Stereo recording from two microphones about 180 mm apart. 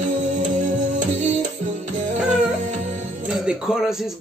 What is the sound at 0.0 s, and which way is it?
Music, 45° right (ahead or behind).